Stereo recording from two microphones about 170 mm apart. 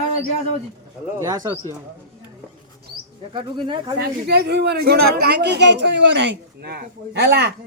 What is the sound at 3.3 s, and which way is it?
Speech, 30° right (ahead or behind).